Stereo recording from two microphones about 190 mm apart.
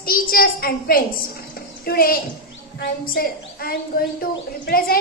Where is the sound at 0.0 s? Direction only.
50° left (ahead or behind).